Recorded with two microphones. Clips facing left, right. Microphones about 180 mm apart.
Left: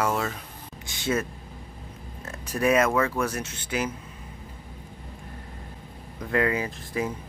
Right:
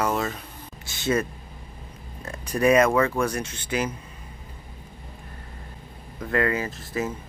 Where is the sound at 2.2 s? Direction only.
5° left (ahead or behind).